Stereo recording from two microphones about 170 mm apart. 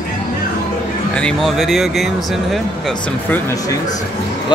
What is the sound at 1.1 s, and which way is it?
Speech, centre (ahead or behind).